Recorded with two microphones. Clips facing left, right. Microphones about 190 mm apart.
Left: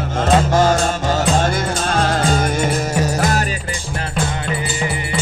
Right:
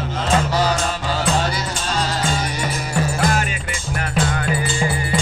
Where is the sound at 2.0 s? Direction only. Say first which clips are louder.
Left 5 dB; 50° left (ahead or behind).